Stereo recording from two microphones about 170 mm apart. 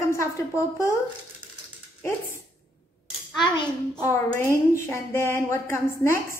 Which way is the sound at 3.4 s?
25° left (ahead or behind).